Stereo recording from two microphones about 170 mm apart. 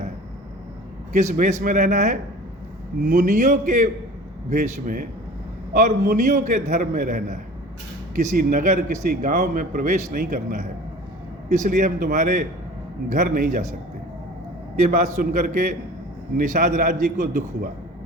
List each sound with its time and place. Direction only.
1.1 s a man's voice: 45° right (ahead or behind)
13.1 s a man's voice: 65° right (ahead or behind)
14.8 s a man's voice: 50° right (ahead or behind)